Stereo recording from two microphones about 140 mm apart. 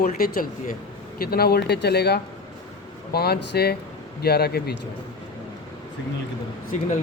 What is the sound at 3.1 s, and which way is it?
A man's voice, 90° left.